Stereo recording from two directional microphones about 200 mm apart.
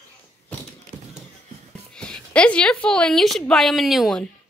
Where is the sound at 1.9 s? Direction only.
5° left (ahead or behind).